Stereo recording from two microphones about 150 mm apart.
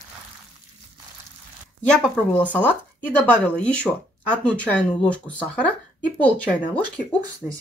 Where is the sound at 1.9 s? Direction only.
5° left (ahead or behind).